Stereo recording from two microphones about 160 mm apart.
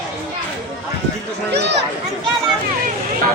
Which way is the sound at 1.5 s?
90° right.